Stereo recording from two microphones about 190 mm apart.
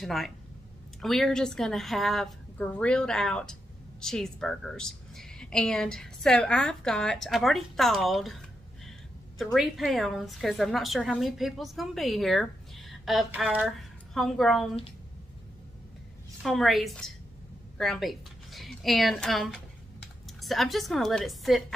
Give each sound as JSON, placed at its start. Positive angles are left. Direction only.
{"t": 0.0, "sound": "a woman's voice", "side_deg": 0}
{"t": 16.4, "sound": "a woman's voice", "side_deg": 0}